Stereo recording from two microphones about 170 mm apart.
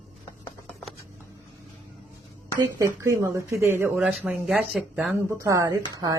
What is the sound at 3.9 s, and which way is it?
Speech, centre (ahead or behind).